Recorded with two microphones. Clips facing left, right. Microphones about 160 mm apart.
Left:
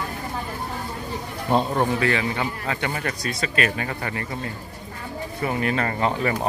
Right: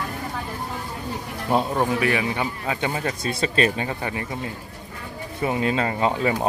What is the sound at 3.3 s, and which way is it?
Speech, 30° right (ahead or behind).